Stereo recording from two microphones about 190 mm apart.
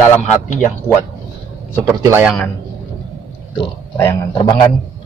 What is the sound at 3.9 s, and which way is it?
Speech, 20° left (ahead or behind).